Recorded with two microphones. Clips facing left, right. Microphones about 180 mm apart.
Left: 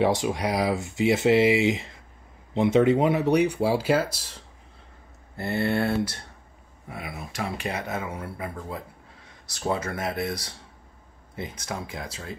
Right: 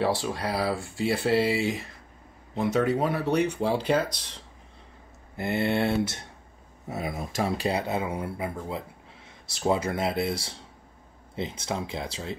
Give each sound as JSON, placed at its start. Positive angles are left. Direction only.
{"t": 0.0, "sound": "speech", "side_deg": 20}
{"t": 5.4, "sound": "speech", "side_deg": -20}
{"t": 7.0, "sound": "speech", "side_deg": -40}